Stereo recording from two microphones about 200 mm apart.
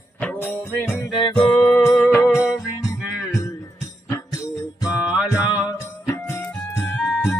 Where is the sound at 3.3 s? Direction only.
15° left (ahead or behind).